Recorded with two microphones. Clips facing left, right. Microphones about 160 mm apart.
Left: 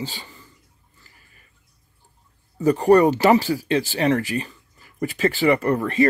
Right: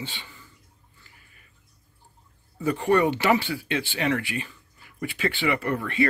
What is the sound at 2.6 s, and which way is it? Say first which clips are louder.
Speech: left 7 dB; 40° left (ahead or behind).